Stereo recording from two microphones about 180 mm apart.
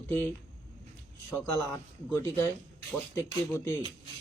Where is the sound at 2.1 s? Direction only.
15° left (ahead or behind).